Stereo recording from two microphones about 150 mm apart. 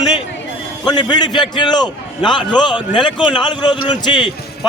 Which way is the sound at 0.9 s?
30° left (ahead or behind).